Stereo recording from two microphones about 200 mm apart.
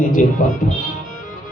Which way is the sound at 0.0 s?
40° left (ahead or behind).